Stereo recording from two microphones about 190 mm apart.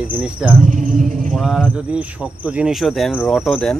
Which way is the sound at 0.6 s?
45° right (ahead or behind).